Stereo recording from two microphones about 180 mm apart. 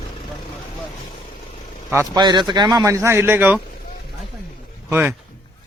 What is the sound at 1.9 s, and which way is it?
A man's voice, 20° right (ahead or behind).